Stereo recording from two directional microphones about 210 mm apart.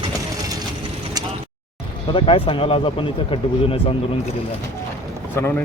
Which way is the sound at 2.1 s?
25° left (ahead or behind).